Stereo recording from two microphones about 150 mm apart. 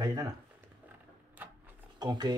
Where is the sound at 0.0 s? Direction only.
25° right (ahead or behind).